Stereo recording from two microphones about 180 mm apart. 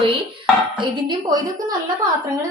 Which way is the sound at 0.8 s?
25° right (ahead or behind).